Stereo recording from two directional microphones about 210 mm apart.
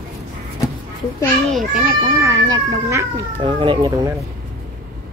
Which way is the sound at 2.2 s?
15° right (ahead or behind).